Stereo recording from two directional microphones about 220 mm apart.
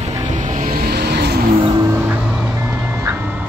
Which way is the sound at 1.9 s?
10° right (ahead or behind).